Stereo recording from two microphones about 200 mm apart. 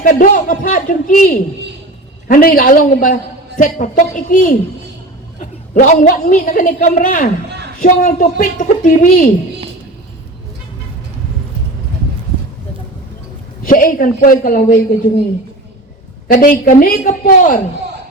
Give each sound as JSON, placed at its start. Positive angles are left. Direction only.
{"t": 0.0, "sound": "a woman's voice", "side_deg": 40}
{"t": 13.7, "sound": "a woman's voice", "side_deg": 45}
{"t": 16.3, "sound": "a woman's voice", "side_deg": 40}